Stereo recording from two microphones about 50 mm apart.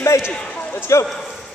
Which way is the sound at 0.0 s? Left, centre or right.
Left.